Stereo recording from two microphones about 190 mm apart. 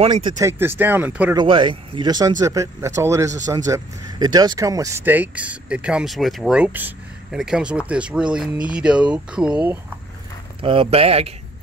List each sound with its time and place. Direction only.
0.0 s speech: 25° right (ahead or behind)
0.4 s speech: 15° right (ahead or behind)
1.3 s speech: 25° right (ahead or behind); by 9.8 s 5° right (ahead or behind)
10.6 s speech: 30° right (ahead or behind)